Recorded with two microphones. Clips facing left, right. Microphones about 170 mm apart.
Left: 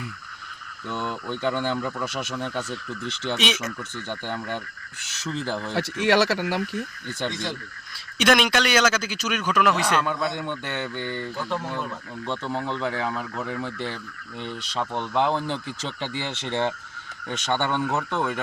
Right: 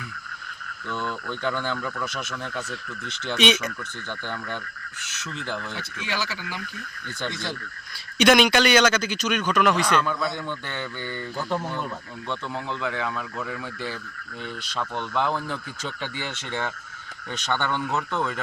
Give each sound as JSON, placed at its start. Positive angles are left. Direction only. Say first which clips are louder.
{"t": 0.9, "sound": "speech", "louder": "left 1 dB", "side_deg": 20}
{"t": 3.3, "sound": "a man's voice", "louder": "right 6 dB", "side_deg": 0}
{"t": 4.3, "sound": "speech", "louder": "left 3 dB", "side_deg": 20}
{"t": 5.1, "sound": "speech", "louder": "left 4 dB", "side_deg": 35}
{"t": 5.7, "sound": "speech", "louder": "left 11 dB", "side_deg": 75}
{"t": 8.2, "sound": "a man's voice", "louder": "right 3 dB", "side_deg": 0}
{"t": 10.1, "sound": "speech", "louder": "left 1 dB", "side_deg": 20}
{"t": 11.0, "sound": "a man's voice", "louder": "left 1 dB", "side_deg": -5}
{"t": 12.3, "sound": "speech", "louder": "left 3 dB", "side_deg": 30}
{"t": 14.8, "sound": "speech", "louder": "left 3 dB", "side_deg": 20}